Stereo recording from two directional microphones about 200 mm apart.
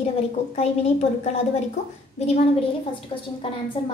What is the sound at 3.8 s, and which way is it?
Speech, 30° left (ahead or behind).